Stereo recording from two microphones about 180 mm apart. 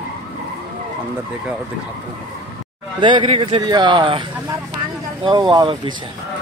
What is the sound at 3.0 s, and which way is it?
A man's voice, 25° right (ahead or behind).